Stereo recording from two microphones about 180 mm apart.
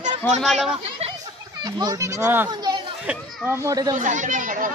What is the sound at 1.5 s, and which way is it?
Speech, 25° right (ahead or behind).